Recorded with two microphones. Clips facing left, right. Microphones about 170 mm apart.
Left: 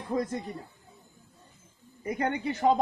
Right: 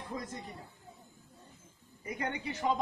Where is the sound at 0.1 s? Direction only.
70° left (ahead or behind).